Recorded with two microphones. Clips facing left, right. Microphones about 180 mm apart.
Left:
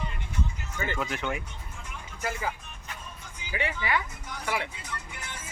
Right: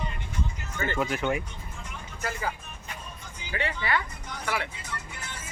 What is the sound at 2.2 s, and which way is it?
Speech, 10° left (ahead or behind).